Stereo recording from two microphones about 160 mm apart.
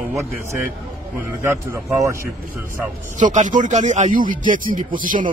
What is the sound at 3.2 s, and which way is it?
A man's voice, 50° right (ahead or behind).